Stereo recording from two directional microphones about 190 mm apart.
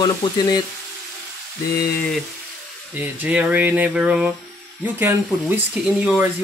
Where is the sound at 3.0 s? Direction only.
5° right (ahead or behind).